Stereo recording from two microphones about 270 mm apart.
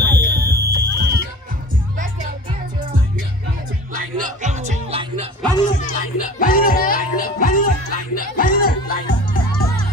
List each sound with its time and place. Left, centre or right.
0.0 s music: right
3.9 s music: right
5.7 s music: left